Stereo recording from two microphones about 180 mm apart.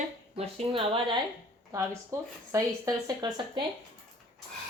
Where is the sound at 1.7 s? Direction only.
15° right (ahead or behind).